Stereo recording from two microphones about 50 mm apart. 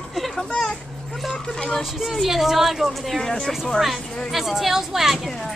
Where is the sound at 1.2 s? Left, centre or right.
Centre.